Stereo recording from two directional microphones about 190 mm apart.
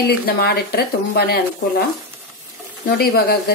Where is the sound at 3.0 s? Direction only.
55° left (ahead or behind).